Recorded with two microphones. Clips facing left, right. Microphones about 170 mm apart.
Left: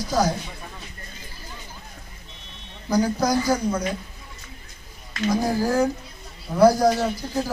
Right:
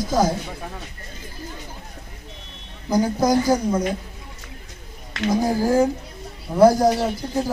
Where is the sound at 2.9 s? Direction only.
20° right (ahead or behind).